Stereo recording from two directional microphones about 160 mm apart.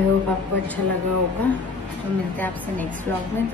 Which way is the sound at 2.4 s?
10° left (ahead or behind).